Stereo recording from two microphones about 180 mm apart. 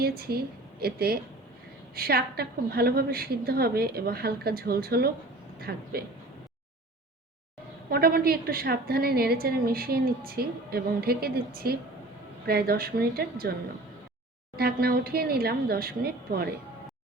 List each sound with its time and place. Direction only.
0.0 s a woman's voice: 60° right (ahead or behind)
7.9 s a woman's voice: 55° right (ahead or behind)